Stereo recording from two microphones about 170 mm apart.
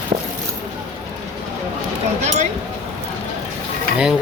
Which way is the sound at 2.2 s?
45° right (ahead or behind).